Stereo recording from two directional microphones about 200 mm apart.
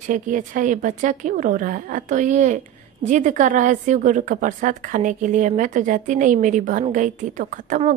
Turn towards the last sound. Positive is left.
turn(degrees=-40)  # may be behind; listen again after turning